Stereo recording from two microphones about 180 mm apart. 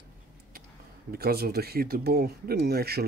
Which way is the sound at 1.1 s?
60° right (ahead or behind).